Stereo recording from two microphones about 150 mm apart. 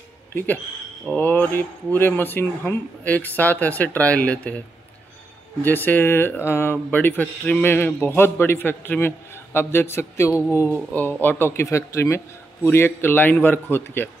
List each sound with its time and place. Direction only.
0.3 s speech: 15° left (ahead or behind)